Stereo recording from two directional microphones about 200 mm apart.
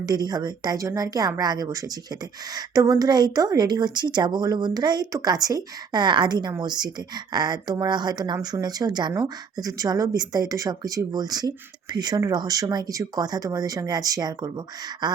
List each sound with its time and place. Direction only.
0.0 s speech: 20° right (ahead or behind)